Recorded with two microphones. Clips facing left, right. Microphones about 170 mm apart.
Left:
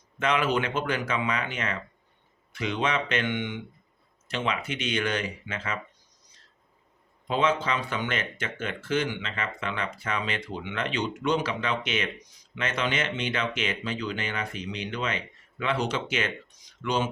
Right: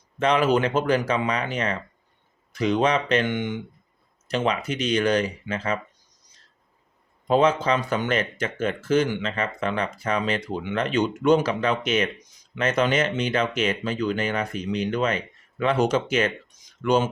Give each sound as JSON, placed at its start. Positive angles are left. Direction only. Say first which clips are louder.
{"t": 0.2, "sound": "speech", "louder": "right 5 dB", "side_deg": -35}
{"t": 7.3, "sound": "speech", "louder": "right 6 dB", "side_deg": -40}